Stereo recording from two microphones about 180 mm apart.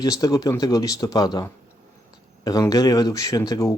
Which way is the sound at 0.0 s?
20° left (ahead or behind).